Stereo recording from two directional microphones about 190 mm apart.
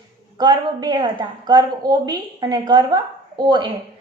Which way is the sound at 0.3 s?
25° right (ahead or behind).